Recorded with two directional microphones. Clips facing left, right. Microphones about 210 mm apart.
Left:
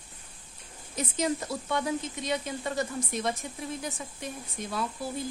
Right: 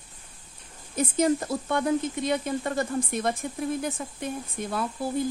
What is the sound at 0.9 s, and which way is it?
Speech, 50° right (ahead or behind).